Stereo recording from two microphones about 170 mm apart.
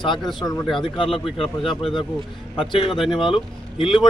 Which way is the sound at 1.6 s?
30° left (ahead or behind).